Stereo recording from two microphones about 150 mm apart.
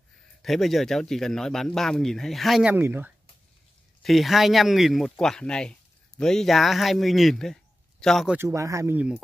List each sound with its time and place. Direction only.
0.4 s speech: centre (ahead or behind)
2.7 s speech: 15° right (ahead or behind)
4.0 s speech: centre (ahead or behind)
8.4 s speech: 20° right (ahead or behind)